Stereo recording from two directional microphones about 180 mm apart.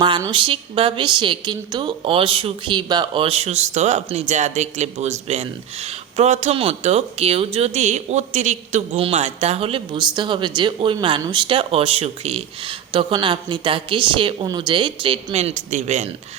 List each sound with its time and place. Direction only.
0.0 s a woman's voice: 25° right (ahead or behind)